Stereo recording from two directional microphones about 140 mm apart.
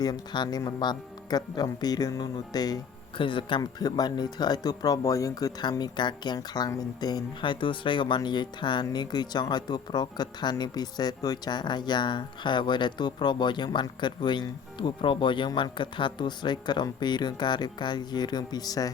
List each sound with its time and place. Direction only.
0.0 s speech: 30° left (ahead or behind)